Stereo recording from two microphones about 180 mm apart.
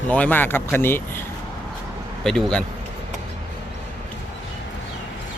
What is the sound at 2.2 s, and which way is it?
Speech, 5° left (ahead or behind).